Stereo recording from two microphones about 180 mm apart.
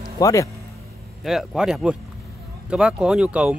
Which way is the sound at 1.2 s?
Centre (ahead or behind).